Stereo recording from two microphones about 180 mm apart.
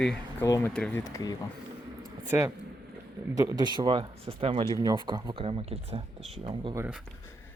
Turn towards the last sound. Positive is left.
turn(degrees=-30)  # may be behind; listen again after turning